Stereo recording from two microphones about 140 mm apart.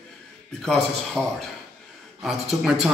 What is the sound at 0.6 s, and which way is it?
A man's voice, 5° left (ahead or behind).